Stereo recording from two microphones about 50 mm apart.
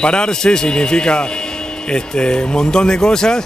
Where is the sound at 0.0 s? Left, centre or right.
Centre.